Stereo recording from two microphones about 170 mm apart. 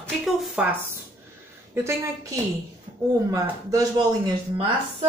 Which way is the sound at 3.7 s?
20° right (ahead or behind).